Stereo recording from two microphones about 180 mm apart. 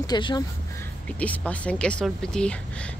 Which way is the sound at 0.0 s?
25° left (ahead or behind).